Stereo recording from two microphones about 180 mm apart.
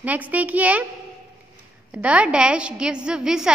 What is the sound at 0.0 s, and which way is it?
Speech, 10° right (ahead or behind).